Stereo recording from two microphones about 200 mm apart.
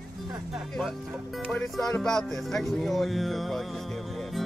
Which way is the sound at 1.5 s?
5° left (ahead or behind).